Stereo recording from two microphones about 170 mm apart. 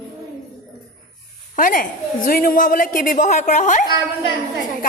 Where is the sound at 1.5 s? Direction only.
55° left (ahead or behind).